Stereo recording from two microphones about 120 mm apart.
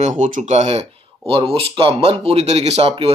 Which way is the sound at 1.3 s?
50° right (ahead or behind).